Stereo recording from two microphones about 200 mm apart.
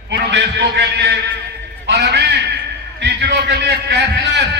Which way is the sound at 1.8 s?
55° right (ahead or behind).